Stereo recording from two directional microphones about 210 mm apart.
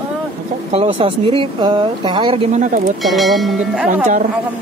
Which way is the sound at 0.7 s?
30° right (ahead or behind).